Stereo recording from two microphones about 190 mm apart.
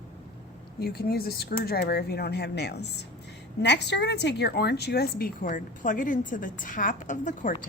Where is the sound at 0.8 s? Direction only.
55° left (ahead or behind).